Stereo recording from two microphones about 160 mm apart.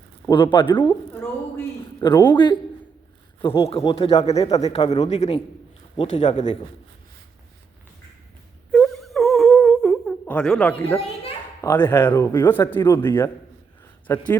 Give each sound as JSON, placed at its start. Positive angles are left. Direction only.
{"t": 0.3, "sound": "speech", "side_deg": 30}
{"t": 2.0, "sound": "speech", "side_deg": 25}
{"t": 3.7, "sound": "speech", "side_deg": 35}
{"t": 4.4, "sound": "speech", "side_deg": 25}
{"t": 4.7, "sound": "speech", "side_deg": 35}
{"t": 5.0, "sound": "a man's voice", "side_deg": 45}
{"t": 8.7, "sound": "wail", "side_deg": 0}
{"t": 10.2, "sound": "speech", "side_deg": 5}
{"t": 11.0, "sound": "children playing", "side_deg": 40}
{"t": 11.6, "sound": "speech", "side_deg": 20}